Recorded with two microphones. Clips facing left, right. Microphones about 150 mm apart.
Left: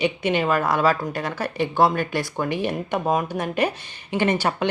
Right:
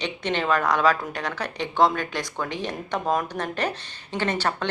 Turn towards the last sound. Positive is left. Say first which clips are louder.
# left 4 dB
turn(degrees=10)  # may be behind; listen again after turning